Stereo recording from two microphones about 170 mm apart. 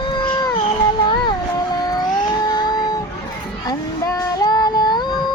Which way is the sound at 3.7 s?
20° left (ahead or behind).